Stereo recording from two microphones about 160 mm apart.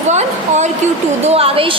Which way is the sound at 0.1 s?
45° right (ahead or behind).